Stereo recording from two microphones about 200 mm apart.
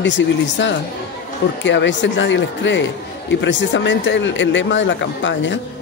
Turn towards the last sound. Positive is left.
turn(degrees=65)  # may be behind; listen again after turning